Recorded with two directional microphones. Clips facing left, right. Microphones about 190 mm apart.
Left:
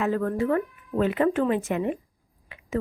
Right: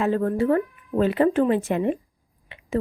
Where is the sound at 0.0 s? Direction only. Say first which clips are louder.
Right 3 dB; 30° right (ahead or behind).